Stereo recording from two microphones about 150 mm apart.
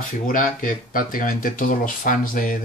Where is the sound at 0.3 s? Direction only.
65° left (ahead or behind).